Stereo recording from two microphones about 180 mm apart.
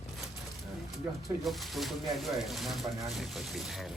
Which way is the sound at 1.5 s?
Centre (ahead or behind).